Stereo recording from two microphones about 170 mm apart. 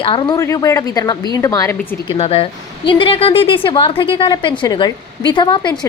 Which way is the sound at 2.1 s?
35° left (ahead or behind).